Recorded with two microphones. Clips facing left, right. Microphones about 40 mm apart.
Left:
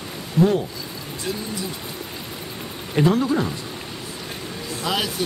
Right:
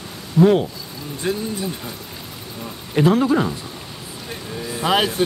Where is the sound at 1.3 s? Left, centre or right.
Right.